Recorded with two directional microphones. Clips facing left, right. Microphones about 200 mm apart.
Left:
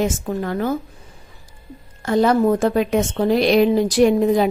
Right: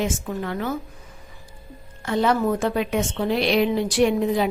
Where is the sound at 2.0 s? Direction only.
40° left (ahead or behind).